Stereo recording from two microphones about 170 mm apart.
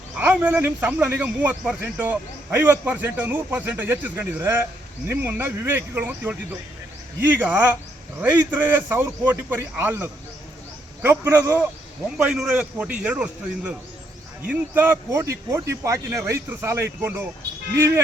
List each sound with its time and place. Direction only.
0.2 s a man's voice: 10° right (ahead or behind)